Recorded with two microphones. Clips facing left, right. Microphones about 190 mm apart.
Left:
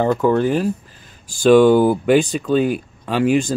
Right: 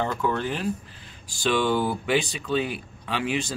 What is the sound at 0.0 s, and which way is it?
Speech, 40° left (ahead or behind).